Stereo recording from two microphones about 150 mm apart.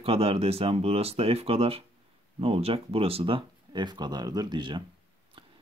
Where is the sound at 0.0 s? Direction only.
40° right (ahead or behind).